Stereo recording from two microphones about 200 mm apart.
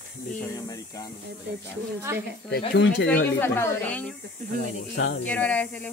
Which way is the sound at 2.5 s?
60° left (ahead or behind).